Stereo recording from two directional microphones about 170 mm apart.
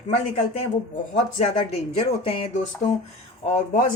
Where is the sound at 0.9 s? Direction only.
40° left (ahead or behind).